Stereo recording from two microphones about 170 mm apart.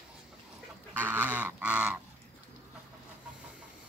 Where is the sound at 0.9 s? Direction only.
10° right (ahead or behind).